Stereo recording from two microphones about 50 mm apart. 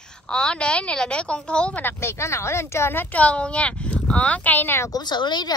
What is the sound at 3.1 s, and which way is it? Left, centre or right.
A woman's voice, left.